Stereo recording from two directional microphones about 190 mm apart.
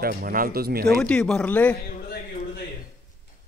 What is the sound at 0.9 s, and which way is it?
Speech, 5° left (ahead or behind).